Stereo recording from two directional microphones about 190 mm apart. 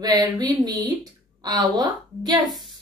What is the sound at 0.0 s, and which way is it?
A woman's voice, 20° right (ahead or behind).